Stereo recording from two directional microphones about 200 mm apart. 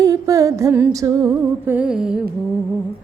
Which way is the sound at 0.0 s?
15° right (ahead or behind).